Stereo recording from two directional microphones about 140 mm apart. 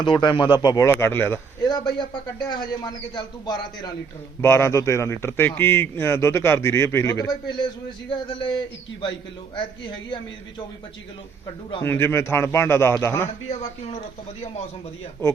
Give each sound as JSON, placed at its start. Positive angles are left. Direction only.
{"t": 0.0, "sound": "speech", "side_deg": 35}
{"t": 0.9, "sound": "speech", "side_deg": 15}
{"t": 1.6, "sound": "a man's voice", "side_deg": 30}
{"t": 4.4, "sound": "a man's voice", "side_deg": 20}
{"t": 9.6, "sound": "speech", "side_deg": 35}
{"t": 11.8, "sound": "a man's voice", "side_deg": 15}
{"t": 13.5, "sound": "speech", "side_deg": 45}